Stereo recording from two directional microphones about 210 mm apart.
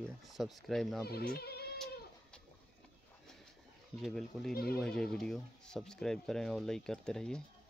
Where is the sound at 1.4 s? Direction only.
50° left (ahead or behind).